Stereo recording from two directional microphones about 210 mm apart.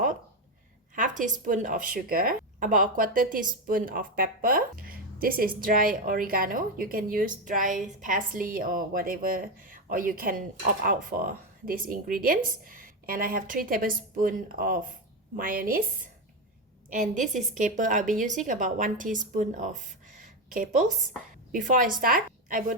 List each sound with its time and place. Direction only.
0.9 s a woman's voice: 35° right (ahead or behind)
16.9 s a woman's voice: 35° right (ahead or behind)